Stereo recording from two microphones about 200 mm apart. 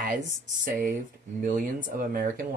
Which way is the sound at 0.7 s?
40° right (ahead or behind).